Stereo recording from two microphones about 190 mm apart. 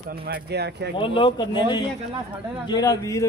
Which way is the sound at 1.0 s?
25° left (ahead or behind).